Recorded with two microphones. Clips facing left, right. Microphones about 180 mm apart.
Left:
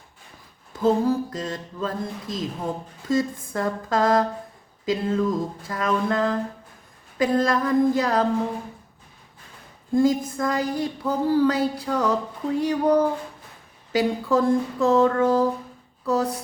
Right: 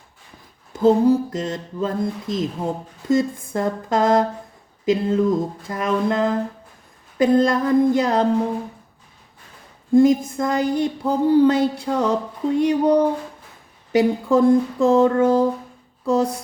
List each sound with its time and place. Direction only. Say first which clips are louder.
1.0 s speech: right 6 dB; 20° right (ahead or behind)
9.9 s speech: right 5 dB; 20° right (ahead or behind)